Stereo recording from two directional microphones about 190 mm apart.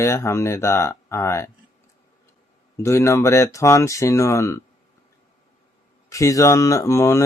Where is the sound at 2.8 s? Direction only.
15° left (ahead or behind).